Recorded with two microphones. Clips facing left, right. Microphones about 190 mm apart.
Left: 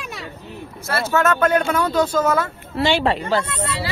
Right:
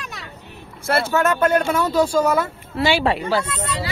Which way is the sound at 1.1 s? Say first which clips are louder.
Left 2 dB; 15° right (ahead or behind).